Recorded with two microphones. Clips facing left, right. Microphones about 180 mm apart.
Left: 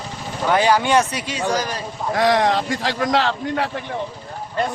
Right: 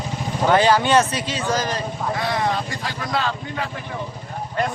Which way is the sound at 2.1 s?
90° left.